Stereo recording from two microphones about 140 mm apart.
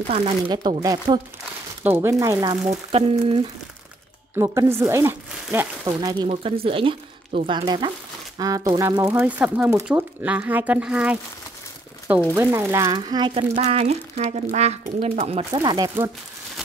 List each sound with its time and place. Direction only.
0.1 s speech: 40° right (ahead or behind)
1.8 s speech: 15° right (ahead or behind)
2.9 s speech: 45° right (ahead or behind)
4.4 s speech: 20° right (ahead or behind)
5.9 s speech: 30° right (ahead or behind)
6.2 s speech: 45° right (ahead or behind); by 9.0 s 25° right (ahead or behind)
9.0 s speech: 10° right (ahead or behind)
12.4 s speech: 15° right (ahead or behind)
13.3 s speech: 45° right (ahead or behind)
15.5 s speech: 30° right (ahead or behind)